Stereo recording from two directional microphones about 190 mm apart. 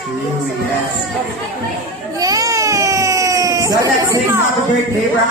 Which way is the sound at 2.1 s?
20° right (ahead or behind).